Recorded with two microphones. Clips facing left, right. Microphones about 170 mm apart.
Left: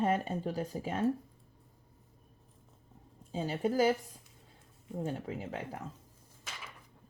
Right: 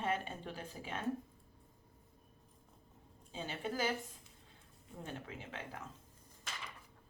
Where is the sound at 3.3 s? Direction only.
40° left (ahead or behind).